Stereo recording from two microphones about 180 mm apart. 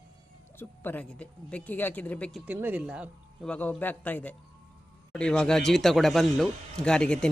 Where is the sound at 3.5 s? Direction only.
10° left (ahead or behind).